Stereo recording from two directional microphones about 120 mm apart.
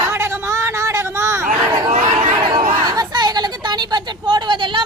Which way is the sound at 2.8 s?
35° right (ahead or behind).